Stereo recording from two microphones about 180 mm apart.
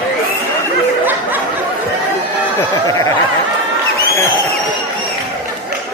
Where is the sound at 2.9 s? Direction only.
20° left (ahead or behind).